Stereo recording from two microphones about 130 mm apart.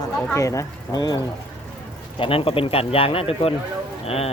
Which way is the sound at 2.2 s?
45° left (ahead or behind).